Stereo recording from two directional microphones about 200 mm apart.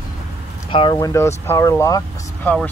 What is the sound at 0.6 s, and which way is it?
Speech, 25° left (ahead or behind).